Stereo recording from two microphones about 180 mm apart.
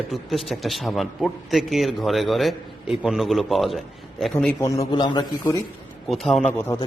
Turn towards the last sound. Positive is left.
turn(degrees=10)  # may be behind; listen again after turning